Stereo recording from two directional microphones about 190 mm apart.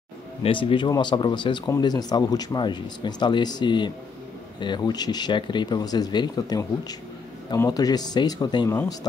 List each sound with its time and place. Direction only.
0.4 s speech: 25° left (ahead or behind)